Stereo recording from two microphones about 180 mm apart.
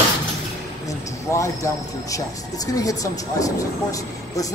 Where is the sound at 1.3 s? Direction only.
15° left (ahead or behind).